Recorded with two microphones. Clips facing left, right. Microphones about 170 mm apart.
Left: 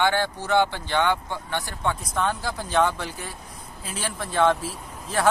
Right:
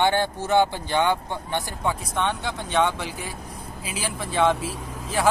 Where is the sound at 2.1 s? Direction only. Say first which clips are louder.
Even; centre (ahead or behind).